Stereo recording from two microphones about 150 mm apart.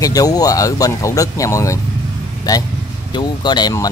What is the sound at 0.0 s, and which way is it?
Speech, 25° left (ahead or behind).